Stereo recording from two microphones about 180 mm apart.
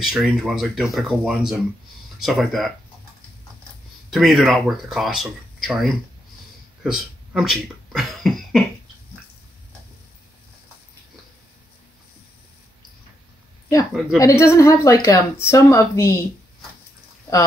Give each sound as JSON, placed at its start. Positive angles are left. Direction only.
{"t": 0.0, "sound": "speech", "side_deg": 0}
{"t": 4.1, "sound": "speech", "side_deg": 0}
{"t": 14.1, "sound": "speech", "side_deg": 15}